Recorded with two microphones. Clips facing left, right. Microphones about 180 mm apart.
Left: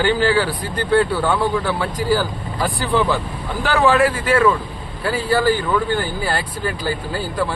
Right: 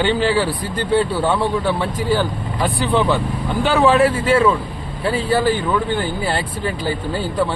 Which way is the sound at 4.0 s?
25° right (ahead or behind).